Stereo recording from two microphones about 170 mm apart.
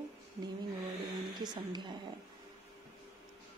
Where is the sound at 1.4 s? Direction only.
25° right (ahead or behind).